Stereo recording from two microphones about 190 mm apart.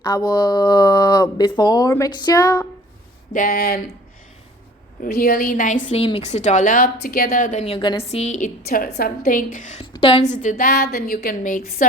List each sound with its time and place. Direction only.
0.0 s speech: 20° left (ahead or behind)
3.3 s a woman's voice: 50° left (ahead or behind)
5.0 s a woman's voice: 55° left (ahead or behind); by 8.4 s 35° left (ahead or behind)
8.6 s a woman's voice: 50° left (ahead or behind)
9.8 s a woman's voice: 25° left (ahead or behind); by 11.9 s 45° left (ahead or behind)